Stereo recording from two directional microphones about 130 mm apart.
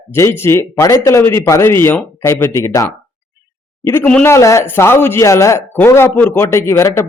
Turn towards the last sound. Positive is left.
turn(degrees=20)  # may be behind; listen again after turning